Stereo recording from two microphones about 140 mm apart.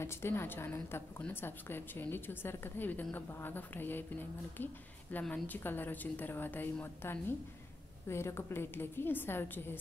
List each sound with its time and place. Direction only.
0.0 s a woman's voice: 20° left (ahead or behind)